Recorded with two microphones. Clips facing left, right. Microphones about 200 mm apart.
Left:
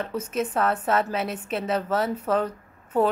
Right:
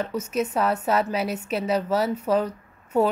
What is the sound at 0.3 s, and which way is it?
Speech, centre (ahead or behind).